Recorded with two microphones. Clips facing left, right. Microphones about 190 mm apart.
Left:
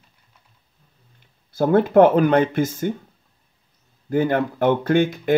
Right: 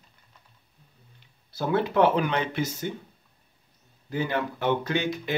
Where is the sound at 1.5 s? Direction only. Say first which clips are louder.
Left 9 dB; 50° left (ahead or behind).